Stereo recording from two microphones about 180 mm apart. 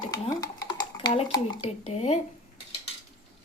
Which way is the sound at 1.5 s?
35° left (ahead or behind).